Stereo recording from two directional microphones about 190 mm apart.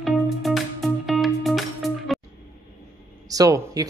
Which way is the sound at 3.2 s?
20° right (ahead or behind).